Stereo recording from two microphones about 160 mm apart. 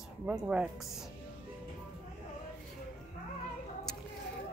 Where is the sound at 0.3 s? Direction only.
5° right (ahead or behind).